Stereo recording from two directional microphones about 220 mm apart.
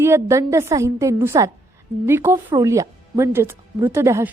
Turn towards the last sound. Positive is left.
turn(degrees=-10)  # may be behind; listen again after turning